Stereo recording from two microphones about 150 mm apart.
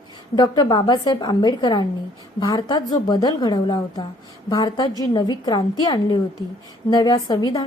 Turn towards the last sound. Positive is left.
turn(degrees=25)  # may be behind; listen again after turning